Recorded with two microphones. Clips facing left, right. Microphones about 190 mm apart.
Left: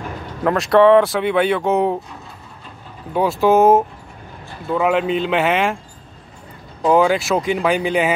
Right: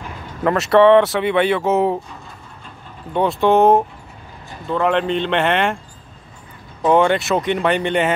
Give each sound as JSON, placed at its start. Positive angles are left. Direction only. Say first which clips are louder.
{"t": 0.4, "sound": "speech", "louder": "even", "side_deg": 0}
{"t": 3.1, "sound": "speech", "louder": "even", "side_deg": 5}
{"t": 6.8, "sound": "speech", "louder": "even", "side_deg": 0}